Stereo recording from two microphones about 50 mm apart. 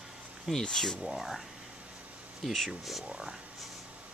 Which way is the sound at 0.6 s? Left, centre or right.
Centre.